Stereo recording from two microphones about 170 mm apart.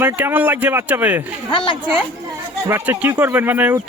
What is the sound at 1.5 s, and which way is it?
Speech, 30° left (ahead or behind).